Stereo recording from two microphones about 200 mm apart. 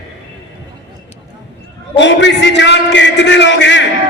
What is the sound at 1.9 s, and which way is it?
A man's voice, 60° left (ahead or behind).